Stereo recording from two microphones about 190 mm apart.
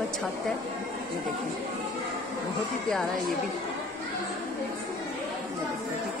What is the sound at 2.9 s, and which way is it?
Speech, 5° left (ahead or behind).